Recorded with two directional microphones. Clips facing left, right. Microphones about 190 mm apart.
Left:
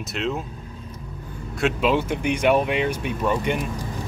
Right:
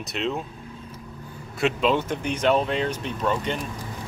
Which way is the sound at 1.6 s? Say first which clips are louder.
Left 1 dB; 5° left (ahead or behind).